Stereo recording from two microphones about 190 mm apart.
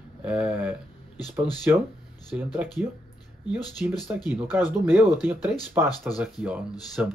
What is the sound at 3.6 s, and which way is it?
Speech, 20° left (ahead or behind).